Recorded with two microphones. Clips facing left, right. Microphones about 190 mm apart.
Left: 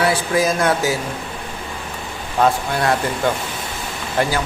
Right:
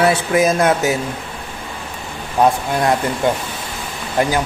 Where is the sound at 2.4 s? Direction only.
20° right (ahead or behind).